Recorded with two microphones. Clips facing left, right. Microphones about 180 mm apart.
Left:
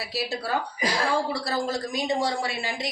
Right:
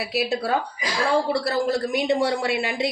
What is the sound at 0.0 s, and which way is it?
A woman's voice, 60° right (ahead or behind).